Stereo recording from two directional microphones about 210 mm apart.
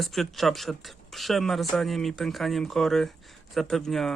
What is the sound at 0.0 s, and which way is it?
Speech, centre (ahead or behind).